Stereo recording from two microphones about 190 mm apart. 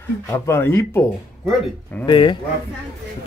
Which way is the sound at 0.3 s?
15° left (ahead or behind).